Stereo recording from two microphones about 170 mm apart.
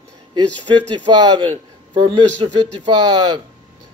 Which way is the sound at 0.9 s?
25° right (ahead or behind).